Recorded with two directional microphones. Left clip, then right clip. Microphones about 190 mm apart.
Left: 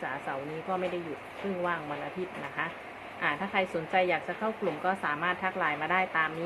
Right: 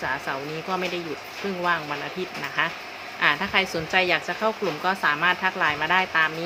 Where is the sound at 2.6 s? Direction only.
30° right (ahead or behind).